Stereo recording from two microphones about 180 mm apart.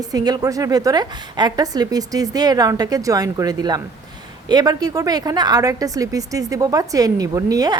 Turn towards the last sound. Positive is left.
turn(degrees=-20)  # may be behind; listen again after turning